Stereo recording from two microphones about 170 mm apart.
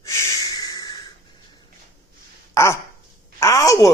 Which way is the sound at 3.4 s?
20° left (ahead or behind).